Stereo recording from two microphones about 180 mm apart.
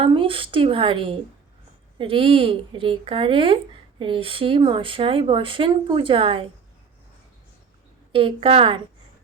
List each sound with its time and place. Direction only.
0.0 s a woman's voice: 30° right (ahead or behind)
8.1 s speech: 30° right (ahead or behind)